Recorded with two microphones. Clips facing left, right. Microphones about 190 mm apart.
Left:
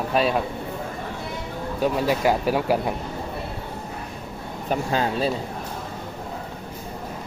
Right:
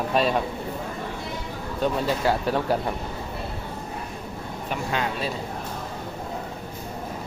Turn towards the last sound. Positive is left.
turn(degrees=35)  # may be behind; listen again after turning